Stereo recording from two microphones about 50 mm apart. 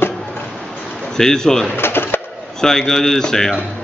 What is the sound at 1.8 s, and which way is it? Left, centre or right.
Bird, left.